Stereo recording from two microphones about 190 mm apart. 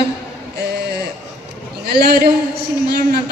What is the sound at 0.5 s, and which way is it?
A woman's voice, 60° right (ahead or behind).